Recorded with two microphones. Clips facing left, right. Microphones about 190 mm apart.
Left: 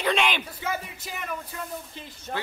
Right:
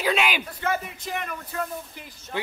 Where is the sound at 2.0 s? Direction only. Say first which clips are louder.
Left 2 dB; 25° left (ahead or behind).